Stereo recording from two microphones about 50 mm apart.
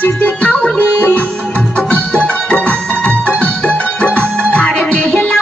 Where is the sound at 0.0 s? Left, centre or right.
Left.